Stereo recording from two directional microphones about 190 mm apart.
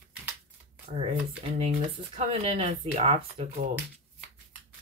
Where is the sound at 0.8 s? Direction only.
30° right (ahead or behind).